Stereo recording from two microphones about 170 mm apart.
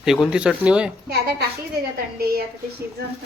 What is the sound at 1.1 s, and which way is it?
Speech, 70° right (ahead or behind).